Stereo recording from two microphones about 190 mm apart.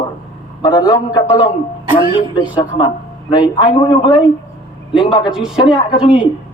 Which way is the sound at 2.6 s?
25° left (ahead or behind).